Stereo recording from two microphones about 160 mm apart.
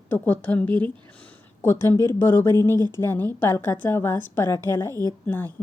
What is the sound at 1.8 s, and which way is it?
A woman's voice, 20° left (ahead or behind).